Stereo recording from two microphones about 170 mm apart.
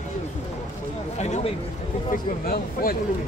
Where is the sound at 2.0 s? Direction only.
55° left (ahead or behind).